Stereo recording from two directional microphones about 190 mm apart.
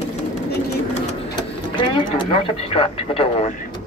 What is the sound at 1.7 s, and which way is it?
Speech, 25° left (ahead or behind).